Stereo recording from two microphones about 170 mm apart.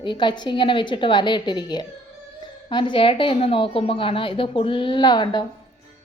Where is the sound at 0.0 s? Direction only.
25° left (ahead or behind).